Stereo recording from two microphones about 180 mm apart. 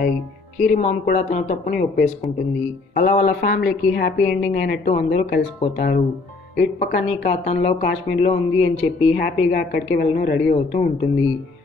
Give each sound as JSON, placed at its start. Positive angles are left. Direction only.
{"t": 0.6, "sound": "a woman's voice", "side_deg": 40}
{"t": 7.1, "sound": "speech", "side_deg": 40}
{"t": 9.2, "sound": "a woman's voice", "side_deg": 50}